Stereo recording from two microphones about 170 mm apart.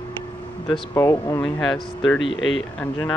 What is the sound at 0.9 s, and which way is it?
Speech, 15° left (ahead or behind).